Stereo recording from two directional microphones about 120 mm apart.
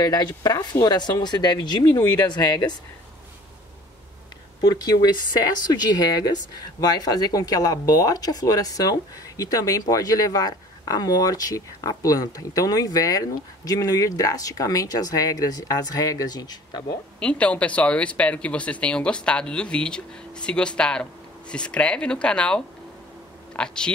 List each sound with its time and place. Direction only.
0.0 s speech: 35° left (ahead or behind)
4.6 s speech: 35° left (ahead or behind)
17.2 s speech: 10° left (ahead or behind)